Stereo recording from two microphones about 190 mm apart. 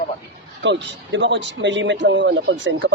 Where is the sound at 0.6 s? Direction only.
70° right (ahead or behind).